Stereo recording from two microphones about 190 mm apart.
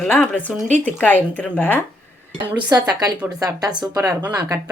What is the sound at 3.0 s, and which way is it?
Speech, 20° right (ahead or behind).